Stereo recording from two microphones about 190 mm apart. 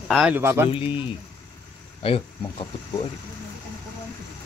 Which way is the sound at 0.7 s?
25° left (ahead or behind).